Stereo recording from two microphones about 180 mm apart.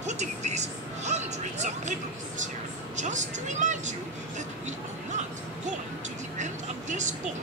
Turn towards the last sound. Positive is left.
turn(degrees=-45)  # may be behind; listen again after turning